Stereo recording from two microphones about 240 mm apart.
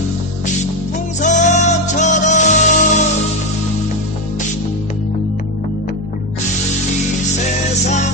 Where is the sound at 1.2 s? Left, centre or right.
Left.